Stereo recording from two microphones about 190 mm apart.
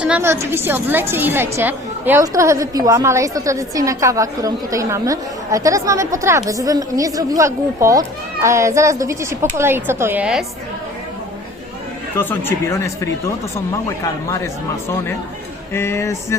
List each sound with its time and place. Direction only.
0.0 s a woman's voice: 10° right (ahead or behind)
12.1 s speech: 10° left (ahead or behind)
14.3 s speech: 15° left (ahead or behind)
15.7 s speech: 15° left (ahead or behind)